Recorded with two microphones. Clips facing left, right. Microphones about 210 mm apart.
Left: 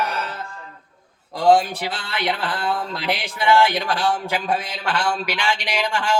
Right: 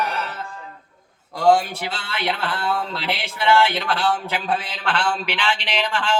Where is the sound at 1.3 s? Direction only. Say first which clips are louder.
Left 1 dB; 20° left (ahead or behind).